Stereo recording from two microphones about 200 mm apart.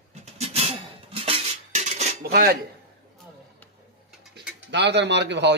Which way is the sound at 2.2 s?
50° right (ahead or behind).